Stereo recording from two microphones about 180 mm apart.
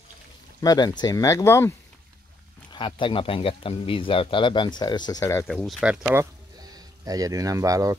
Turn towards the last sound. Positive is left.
turn(degrees=-20)  # may be behind; listen again after turning